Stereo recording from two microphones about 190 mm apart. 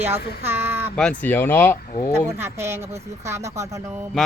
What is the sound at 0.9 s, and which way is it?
Speech, 5° left (ahead or behind).